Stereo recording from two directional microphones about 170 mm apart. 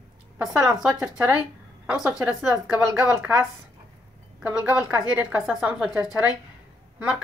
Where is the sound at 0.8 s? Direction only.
5° right (ahead or behind).